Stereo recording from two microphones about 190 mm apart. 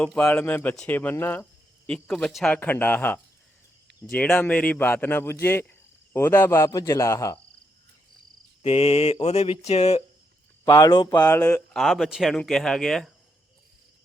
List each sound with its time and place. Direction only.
0.0 s speech: 5° left (ahead or behind)
8.6 s cricket: 30° left (ahead or behind)
10.7 s speech: 20° left (ahead or behind); by 13.1 s centre (ahead or behind)